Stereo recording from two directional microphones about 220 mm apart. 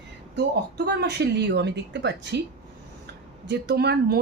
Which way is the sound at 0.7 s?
50° right (ahead or behind).